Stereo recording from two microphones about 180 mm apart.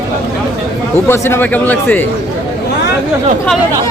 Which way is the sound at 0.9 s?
15° left (ahead or behind).